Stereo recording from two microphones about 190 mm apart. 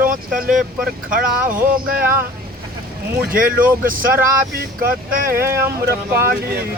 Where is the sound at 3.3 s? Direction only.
45° right (ahead or behind).